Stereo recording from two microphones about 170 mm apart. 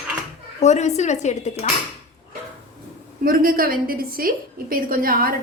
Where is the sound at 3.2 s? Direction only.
60° right (ahead or behind).